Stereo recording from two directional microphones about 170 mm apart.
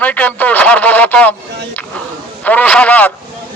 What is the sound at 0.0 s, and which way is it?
Speech, 10° left (ahead or behind).